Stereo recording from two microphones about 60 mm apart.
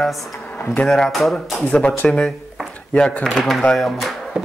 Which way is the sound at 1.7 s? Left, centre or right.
Left.